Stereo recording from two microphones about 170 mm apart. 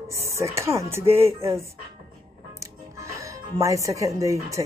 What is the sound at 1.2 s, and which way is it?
Speech, 35° right (ahead or behind).